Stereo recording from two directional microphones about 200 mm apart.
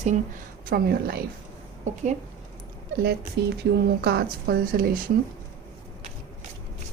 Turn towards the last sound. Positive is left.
turn(degrees=-45)  # may be behind; listen again after turning